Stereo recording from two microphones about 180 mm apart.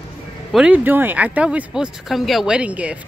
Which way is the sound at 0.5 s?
5° right (ahead or behind).